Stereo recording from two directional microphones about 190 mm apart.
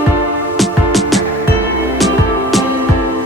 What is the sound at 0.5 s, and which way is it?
Music, centre (ahead or behind).